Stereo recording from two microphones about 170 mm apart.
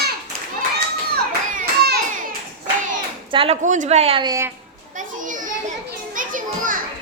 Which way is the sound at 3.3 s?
35° right (ahead or behind).